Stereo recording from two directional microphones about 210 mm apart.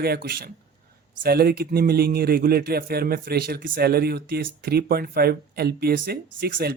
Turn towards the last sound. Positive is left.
turn(degrees=-45)  # may be behind; listen again after turning